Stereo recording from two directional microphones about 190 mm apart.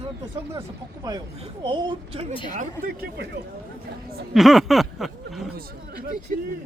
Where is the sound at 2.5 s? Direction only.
40° right (ahead or behind).